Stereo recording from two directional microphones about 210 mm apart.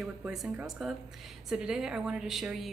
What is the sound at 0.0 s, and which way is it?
A woman's voice, centre (ahead or behind).